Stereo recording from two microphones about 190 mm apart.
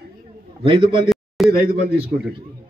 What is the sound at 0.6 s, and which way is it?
Speech, 30° right (ahead or behind).